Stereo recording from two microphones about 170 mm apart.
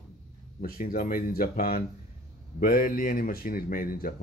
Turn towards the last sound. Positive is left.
turn(degrees=55)  # may be behind; listen again after turning